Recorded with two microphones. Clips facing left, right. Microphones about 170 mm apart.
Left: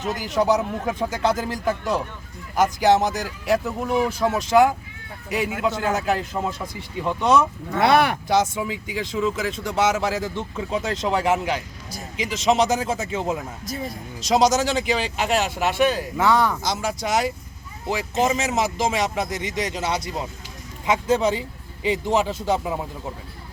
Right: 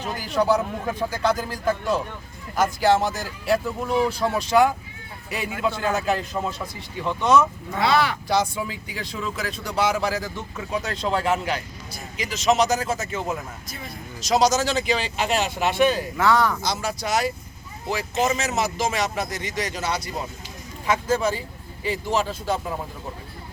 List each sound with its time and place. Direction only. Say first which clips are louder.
0.0 s speech: left 1 dB; 20° left (ahead or behind)
7.8 s speech: left 3 dB; 55° left (ahead or behind)
8.3 s speech: left 2 dB; 15° left (ahead or behind)
13.7 s speech: left 8 dB; 40° left (ahead or behind)
14.3 s speech: left 1 dB; 20° left (ahead or behind)